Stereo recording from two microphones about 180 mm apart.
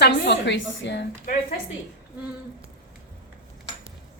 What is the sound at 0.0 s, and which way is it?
A woman's voice, 75° left (ahead or behind).